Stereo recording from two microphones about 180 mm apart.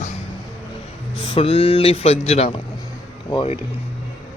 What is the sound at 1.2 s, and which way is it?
Speech, 30° left (ahead or behind).